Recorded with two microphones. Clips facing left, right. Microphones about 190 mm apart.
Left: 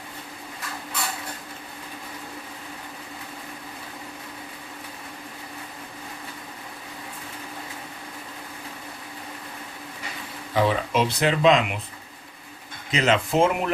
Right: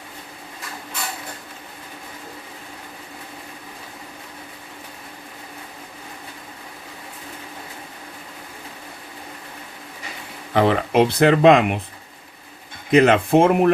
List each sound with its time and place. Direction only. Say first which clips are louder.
10.5 s speech: right 5 dB; 65° right (ahead or behind)
12.9 s speech: right 8 dB; 55° right (ahead or behind)